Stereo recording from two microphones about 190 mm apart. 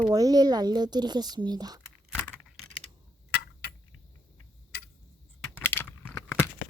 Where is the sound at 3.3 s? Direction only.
55° left (ahead or behind).